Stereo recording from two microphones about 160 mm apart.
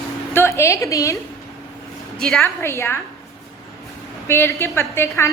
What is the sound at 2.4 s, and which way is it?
Speech, 15° left (ahead or behind).